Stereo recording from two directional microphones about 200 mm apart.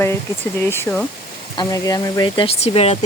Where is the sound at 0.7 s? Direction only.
10° left (ahead or behind).